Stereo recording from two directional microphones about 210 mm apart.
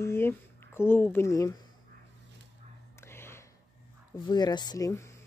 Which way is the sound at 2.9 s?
10° left (ahead or behind).